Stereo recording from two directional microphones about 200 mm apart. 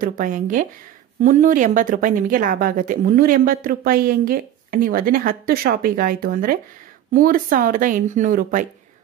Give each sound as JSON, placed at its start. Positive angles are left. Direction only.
{"t": 0.0, "sound": "a woman's voice", "side_deg": -40}